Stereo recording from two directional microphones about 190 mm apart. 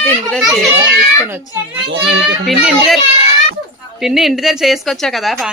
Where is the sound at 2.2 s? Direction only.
Centre (ahead or behind).